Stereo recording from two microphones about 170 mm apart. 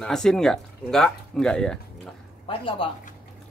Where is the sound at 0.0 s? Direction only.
5° left (ahead or behind).